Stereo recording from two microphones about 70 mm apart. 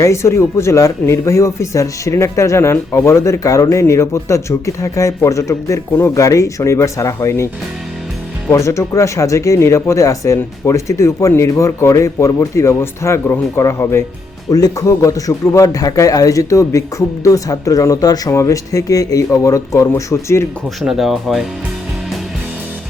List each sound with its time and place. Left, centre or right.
0.0 s speech: left
14.5 s speech: left
18.3 s speech: left
20.8 s speech: centre